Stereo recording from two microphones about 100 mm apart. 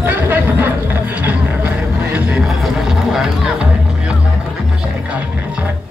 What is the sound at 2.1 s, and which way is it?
Music, 10° right (ahead or behind).